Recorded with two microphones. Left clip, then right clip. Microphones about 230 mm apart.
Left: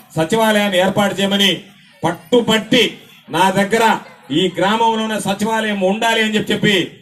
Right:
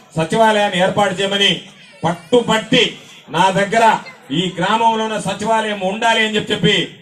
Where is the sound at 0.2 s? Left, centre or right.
Left.